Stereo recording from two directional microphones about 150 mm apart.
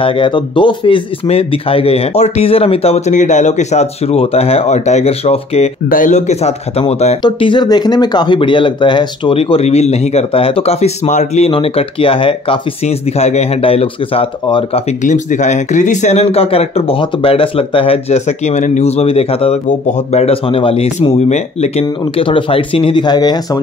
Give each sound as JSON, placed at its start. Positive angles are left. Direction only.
{"t": 0.0, "sound": "speech", "side_deg": 35}
{"t": 5.9, "sound": "speech", "side_deg": 60}
{"t": 7.2, "sound": "speech", "side_deg": 35}
{"t": 15.0, "sound": "speech", "side_deg": 55}